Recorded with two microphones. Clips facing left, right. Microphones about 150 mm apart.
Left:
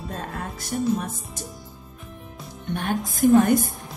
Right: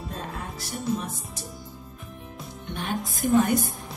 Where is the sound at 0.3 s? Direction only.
50° left (ahead or behind).